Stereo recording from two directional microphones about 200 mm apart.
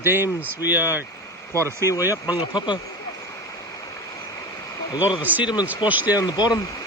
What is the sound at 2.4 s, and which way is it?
Speech, 20° left (ahead or behind).